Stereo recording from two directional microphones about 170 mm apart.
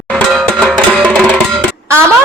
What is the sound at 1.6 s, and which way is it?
Music, 15° right (ahead or behind).